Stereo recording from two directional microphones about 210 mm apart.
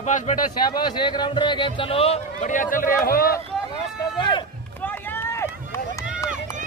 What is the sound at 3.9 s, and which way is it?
Run, 20° left (ahead or behind).